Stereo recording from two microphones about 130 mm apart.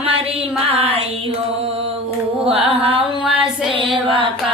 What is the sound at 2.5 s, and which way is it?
Mantra, 50° right (ahead or behind).